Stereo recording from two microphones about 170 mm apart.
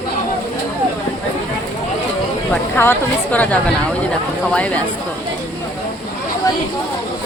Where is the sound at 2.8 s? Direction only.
10° left (ahead or behind).